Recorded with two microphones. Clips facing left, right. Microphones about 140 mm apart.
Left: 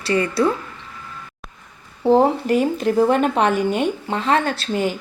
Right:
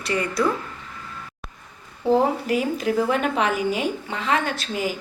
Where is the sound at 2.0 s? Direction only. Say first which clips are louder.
Left 4 dB; 30° left (ahead or behind).